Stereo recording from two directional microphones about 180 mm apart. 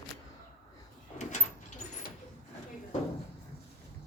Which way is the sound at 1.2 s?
40° left (ahead or behind).